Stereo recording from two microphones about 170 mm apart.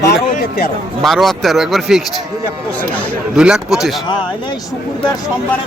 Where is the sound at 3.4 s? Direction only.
5° right (ahead or behind).